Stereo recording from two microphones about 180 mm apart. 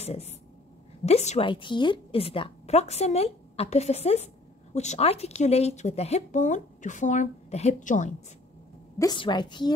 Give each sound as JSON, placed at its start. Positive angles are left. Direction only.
{"t": 0.0, "sound": "speech", "side_deg": 35}
{"t": 1.5, "sound": "speech", "side_deg": 25}
{"t": 8.9, "sound": "a woman's voice", "side_deg": 25}